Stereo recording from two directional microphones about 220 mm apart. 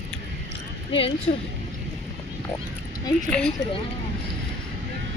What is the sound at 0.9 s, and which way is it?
Speech, 25° left (ahead or behind).